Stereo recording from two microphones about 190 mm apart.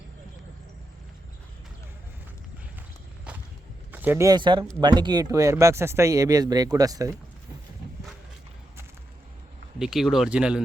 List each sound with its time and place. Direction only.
3.3 s a sound: 5° right (ahead or behind)
3.9 s speech: 10° right (ahead or behind)
9.7 s speech: centre (ahead or behind)